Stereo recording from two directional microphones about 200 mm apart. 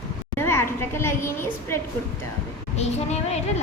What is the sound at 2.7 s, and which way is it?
Speech, 35° left (ahead or behind).